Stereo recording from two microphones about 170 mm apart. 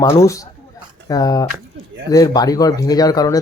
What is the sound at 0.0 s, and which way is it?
Speech, 20° left (ahead or behind).